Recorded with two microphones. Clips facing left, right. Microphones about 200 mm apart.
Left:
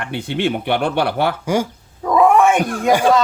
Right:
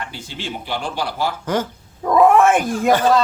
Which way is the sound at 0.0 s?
60° left (ahead or behind).